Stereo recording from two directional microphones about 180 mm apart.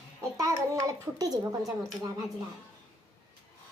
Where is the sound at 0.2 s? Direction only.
20° right (ahead or behind).